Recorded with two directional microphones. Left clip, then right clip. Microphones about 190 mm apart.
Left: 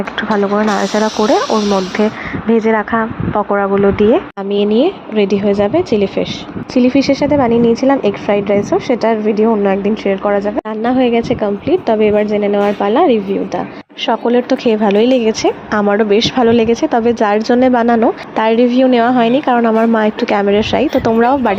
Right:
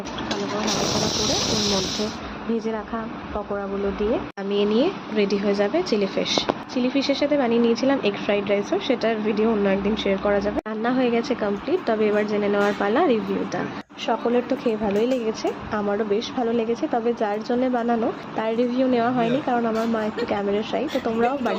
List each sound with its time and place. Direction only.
2.0 s a woman's voice: 35° left (ahead or behind)